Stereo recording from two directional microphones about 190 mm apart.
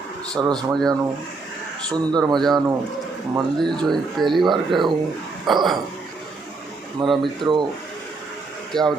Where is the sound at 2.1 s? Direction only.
20° right (ahead or behind).